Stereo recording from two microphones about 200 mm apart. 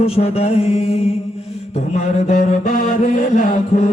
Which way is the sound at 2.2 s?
40° left (ahead or behind).